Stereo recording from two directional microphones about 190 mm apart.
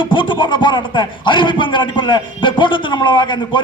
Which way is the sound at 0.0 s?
25° left (ahead or behind).